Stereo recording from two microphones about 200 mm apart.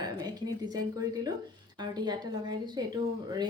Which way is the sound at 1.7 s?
20° right (ahead or behind).